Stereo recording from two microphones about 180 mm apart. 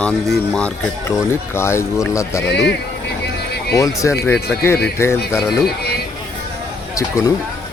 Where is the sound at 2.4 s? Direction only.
70° left (ahead or behind).